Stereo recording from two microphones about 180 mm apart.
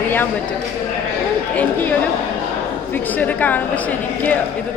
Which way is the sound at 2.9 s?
10° left (ahead or behind).